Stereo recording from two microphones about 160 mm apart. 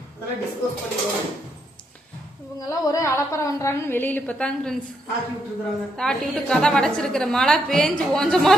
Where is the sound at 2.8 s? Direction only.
20° left (ahead or behind); by 4.8 s 5° left (ahead or behind).